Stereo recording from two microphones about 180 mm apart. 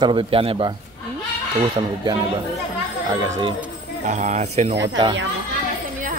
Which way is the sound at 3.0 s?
20° right (ahead or behind).